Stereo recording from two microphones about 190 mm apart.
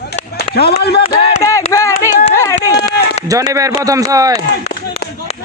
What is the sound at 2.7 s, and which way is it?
Run, 60° left (ahead or behind).